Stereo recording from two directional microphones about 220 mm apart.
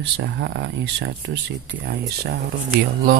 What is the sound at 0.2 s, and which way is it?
Speech, 55° right (ahead or behind).